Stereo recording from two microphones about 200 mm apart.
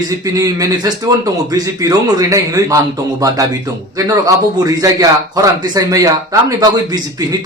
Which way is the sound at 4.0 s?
15° right (ahead or behind).